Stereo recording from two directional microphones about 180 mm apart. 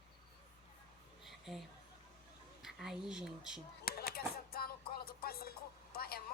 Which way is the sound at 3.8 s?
55° left (ahead or behind).